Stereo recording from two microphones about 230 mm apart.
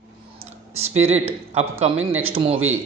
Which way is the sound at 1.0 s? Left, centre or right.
Right.